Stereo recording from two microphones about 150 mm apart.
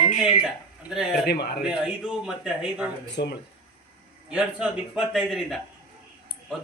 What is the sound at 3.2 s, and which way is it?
Speech, 90° left.